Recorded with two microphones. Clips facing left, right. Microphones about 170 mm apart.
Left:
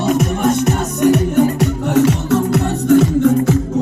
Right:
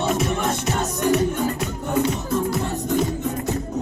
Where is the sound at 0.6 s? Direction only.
70° left (ahead or behind).